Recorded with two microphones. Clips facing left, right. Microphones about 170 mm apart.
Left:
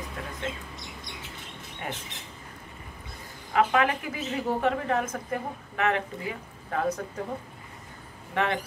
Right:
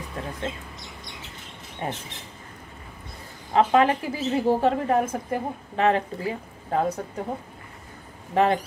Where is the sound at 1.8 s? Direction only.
30° right (ahead or behind).